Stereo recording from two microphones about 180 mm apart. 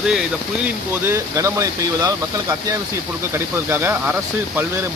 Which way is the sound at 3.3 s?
15° right (ahead or behind).